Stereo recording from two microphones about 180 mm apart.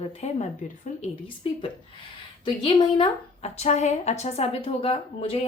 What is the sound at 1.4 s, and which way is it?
A woman's voice, 30° left (ahead or behind).